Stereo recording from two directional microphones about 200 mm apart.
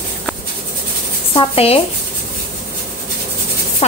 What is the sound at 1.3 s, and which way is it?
Speech, 30° left (ahead or behind).